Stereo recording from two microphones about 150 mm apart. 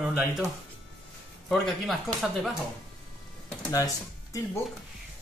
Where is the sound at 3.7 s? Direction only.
20° left (ahead or behind).